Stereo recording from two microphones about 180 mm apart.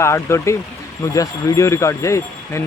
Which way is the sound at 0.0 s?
15° left (ahead or behind).